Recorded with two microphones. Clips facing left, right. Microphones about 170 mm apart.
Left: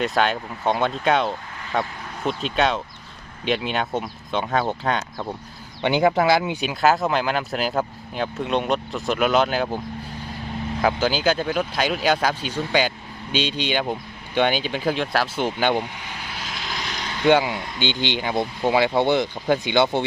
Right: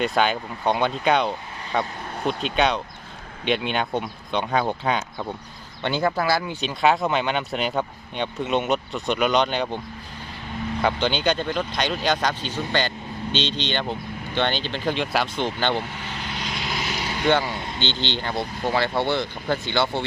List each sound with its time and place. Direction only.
0.0 s speech: centre (ahead or behind)
5.8 s speech: 15° left (ahead or behind); by 17.1 s 5° right (ahead or behind)
17.2 s speech: 15° left (ahead or behind)